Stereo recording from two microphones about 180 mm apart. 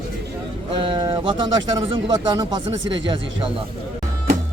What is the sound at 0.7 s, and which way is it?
Speech, 30° right (ahead or behind).